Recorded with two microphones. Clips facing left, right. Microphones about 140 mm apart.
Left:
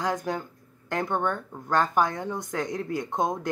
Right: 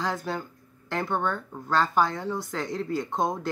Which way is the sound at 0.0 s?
15° left (ahead or behind).